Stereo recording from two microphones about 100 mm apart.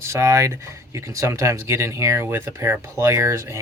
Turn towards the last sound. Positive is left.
turn(degrees=-30)  # may be behind; listen again after turning